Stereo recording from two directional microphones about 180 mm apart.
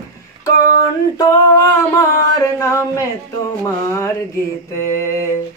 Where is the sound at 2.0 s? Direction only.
20° left (ahead or behind).